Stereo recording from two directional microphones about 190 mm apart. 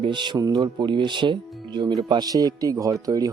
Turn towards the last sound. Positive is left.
turn(degrees=-20)  # may be behind; listen again after turning